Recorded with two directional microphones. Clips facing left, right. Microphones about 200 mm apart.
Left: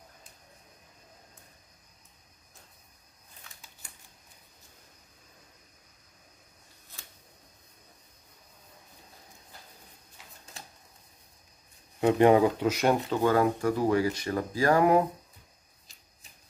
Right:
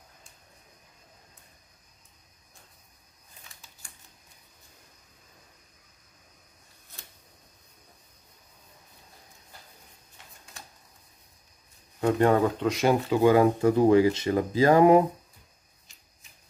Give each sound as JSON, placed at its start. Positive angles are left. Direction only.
{"t": 12.0, "sound": "speech", "side_deg": 15}
{"t": 13.1, "sound": "speech", "side_deg": -15}